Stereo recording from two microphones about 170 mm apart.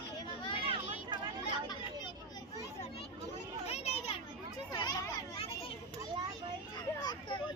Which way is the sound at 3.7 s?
35° left (ahead or behind).